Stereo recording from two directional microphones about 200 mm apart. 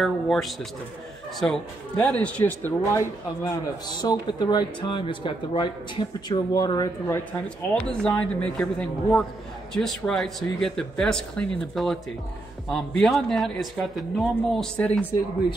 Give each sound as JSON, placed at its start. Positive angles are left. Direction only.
{"t": 0.0, "sound": "a man's voice", "side_deg": 0}